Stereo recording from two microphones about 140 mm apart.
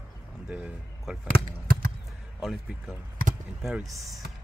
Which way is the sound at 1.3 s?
90° right.